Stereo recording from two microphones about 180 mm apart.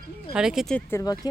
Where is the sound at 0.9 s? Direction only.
20° left (ahead or behind).